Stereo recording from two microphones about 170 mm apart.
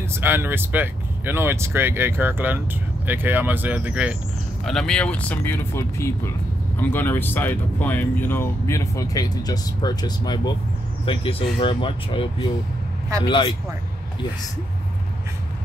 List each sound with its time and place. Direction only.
0.1 s speech: 15° right (ahead or behind)
4.6 s speech: 5° left (ahead or behind); by 12.3 s 30° left (ahead or behind)
13.3 s speech: 30° left (ahead or behind)